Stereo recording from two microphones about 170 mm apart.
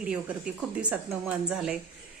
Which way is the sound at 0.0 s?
5° right (ahead or behind).